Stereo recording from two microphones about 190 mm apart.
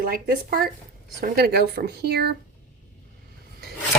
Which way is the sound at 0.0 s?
50° right (ahead or behind).